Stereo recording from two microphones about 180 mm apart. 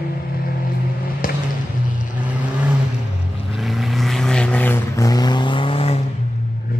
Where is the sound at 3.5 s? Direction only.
Centre (ahead or behind); by 5.9 s 30° left (ahead or behind).